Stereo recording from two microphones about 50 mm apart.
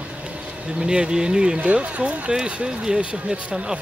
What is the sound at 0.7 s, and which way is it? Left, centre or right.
Speech, centre.